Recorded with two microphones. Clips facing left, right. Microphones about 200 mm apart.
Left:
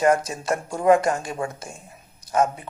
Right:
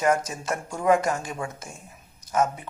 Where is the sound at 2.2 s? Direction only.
35° left (ahead or behind).